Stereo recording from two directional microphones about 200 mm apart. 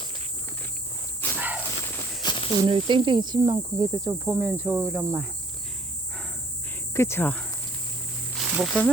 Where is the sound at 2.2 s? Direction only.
25° left (ahead or behind).